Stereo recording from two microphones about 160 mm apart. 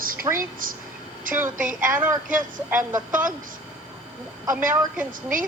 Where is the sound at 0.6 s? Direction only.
60° right (ahead or behind).